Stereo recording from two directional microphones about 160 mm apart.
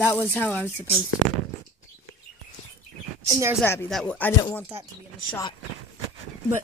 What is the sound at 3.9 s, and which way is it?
Speech, 5° left (ahead or behind).